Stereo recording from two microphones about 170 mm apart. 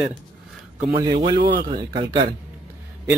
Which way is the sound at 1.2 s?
25° right (ahead or behind).